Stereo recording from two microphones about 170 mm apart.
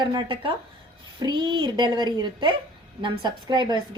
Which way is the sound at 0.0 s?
25° right (ahead or behind).